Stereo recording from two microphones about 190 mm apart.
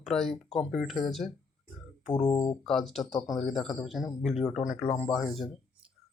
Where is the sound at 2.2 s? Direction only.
20° left (ahead or behind).